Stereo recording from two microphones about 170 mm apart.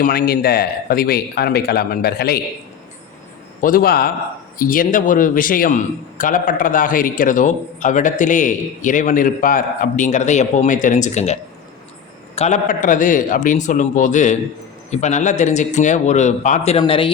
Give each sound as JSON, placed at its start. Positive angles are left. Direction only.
{"t": 0.0, "sound": "a man's voice", "side_deg": 65}
{"t": 3.6, "sound": "a man's voice", "side_deg": 55}
{"t": 12.4, "sound": "a man's voice", "side_deg": 45}